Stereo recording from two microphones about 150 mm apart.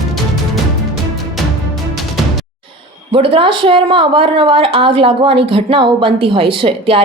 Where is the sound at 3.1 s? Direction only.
35° right (ahead or behind).